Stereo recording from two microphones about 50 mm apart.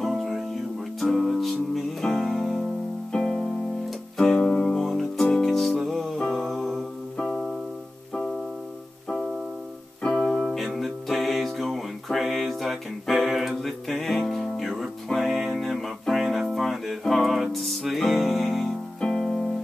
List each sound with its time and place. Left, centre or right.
0.2 s music: centre
3.1 s music: centre
4.6 s music: centre
9.1 s music: centre
10.0 s keyboard: centre
10.7 s music: centre
18.9 s piano: centre